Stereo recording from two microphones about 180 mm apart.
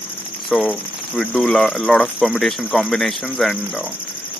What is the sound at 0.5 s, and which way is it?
Speech, centre (ahead or behind).